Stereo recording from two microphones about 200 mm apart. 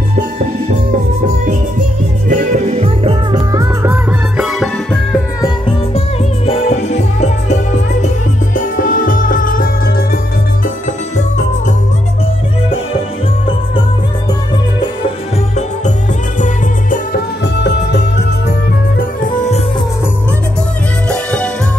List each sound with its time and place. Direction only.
2.2 s music: 40° right (ahead or behind); by 3.6 s 25° right (ahead or behind)
3.8 s music: 5° right (ahead or behind)
5.9 s music: 30° left (ahead or behind)
17.6 s music: 55° left (ahead or behind)
18.9 s music: 40° left (ahead or behind)
21.1 s music: 5° left (ahead or behind)